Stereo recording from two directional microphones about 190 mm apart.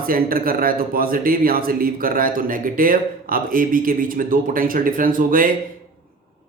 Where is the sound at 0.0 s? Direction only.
50° right (ahead or behind).